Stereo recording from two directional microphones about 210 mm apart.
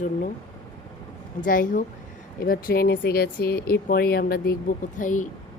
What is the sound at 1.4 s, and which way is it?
A woman's voice, 40° left (ahead or behind).